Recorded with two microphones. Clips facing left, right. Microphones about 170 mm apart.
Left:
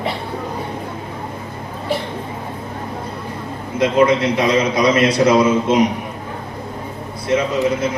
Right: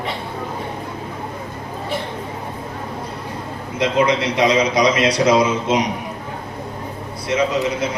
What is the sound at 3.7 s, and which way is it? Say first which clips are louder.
A man's voice: left 3 dB; 55° left (ahead or behind).